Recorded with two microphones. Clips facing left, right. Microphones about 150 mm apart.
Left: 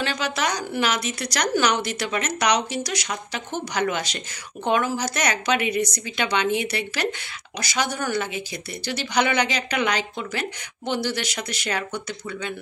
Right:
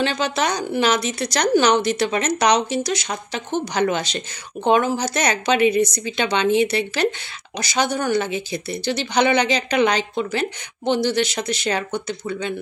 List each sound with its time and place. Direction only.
0.0 s a woman's voice: 25° right (ahead or behind)